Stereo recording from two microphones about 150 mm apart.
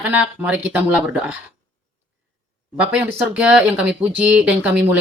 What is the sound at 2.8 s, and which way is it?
Speech, 10° right (ahead or behind).